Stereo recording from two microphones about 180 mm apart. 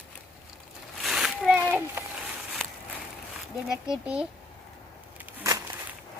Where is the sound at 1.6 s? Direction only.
10° right (ahead or behind).